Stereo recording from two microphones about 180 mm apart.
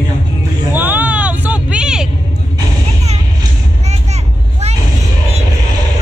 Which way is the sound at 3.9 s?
40° right (ahead or behind).